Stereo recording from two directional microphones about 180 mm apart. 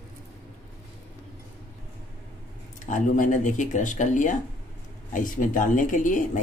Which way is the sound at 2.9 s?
45° left (ahead or behind).